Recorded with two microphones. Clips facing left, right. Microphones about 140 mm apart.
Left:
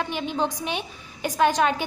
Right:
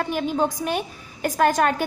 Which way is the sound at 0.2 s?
5° right (ahead or behind).